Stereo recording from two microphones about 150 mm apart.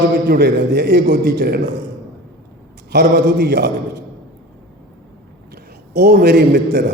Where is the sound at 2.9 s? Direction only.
85° right.